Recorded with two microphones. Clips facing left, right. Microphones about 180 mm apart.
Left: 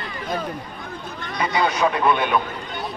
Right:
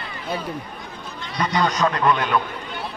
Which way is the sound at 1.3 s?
10° left (ahead or behind).